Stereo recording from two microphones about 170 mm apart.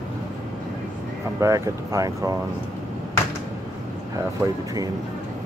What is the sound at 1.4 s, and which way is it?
Speech, 20° right (ahead or behind).